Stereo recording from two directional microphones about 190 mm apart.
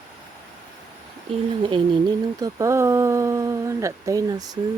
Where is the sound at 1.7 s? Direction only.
25° right (ahead or behind).